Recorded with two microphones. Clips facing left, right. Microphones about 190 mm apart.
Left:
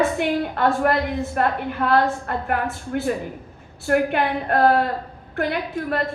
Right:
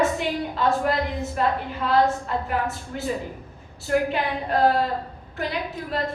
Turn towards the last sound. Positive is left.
turn(degrees=60)  # may be behind; listen again after turning